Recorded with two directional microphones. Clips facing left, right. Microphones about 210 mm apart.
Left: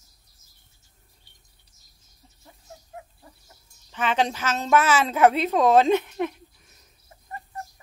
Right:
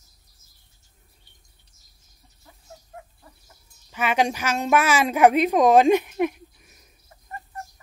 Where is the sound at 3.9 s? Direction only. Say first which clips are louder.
Right 2 dB; 10° right (ahead or behind).